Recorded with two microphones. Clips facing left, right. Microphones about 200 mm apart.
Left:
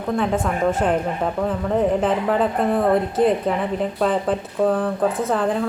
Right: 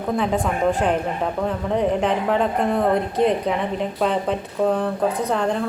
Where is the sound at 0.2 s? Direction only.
Centre (ahead or behind).